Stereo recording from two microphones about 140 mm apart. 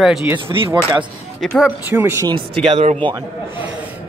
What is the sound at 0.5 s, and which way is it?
Speech, 35° right (ahead or behind).